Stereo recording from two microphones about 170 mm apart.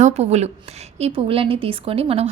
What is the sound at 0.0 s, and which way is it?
A woman's voice, 40° right (ahead or behind).